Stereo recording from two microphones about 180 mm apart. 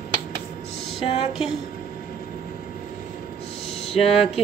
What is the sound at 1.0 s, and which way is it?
Speech, 35° left (ahead or behind).